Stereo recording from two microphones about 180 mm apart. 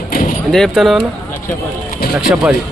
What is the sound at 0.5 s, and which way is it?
Speech, centre (ahead or behind).